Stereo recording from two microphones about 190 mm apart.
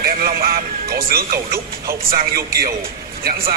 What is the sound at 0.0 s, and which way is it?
Speech, 50° right (ahead or behind).